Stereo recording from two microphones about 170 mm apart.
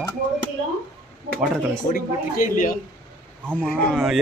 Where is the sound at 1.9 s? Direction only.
50° left (ahead or behind).